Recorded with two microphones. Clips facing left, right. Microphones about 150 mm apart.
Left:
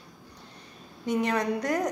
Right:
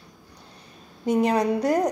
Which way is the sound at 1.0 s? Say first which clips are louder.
Right 6 dB; 35° right (ahead or behind).